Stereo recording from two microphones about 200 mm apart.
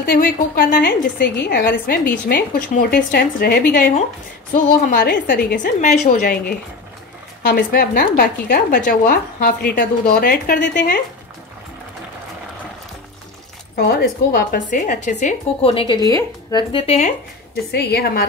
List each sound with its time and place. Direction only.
0.0 s a woman's voice: 45° left (ahead or behind)
13.7 s a woman's voice: 50° left (ahead or behind); by 17.1 s 30° left (ahead or behind)
17.6 s a woman's voice: 55° left (ahead or behind)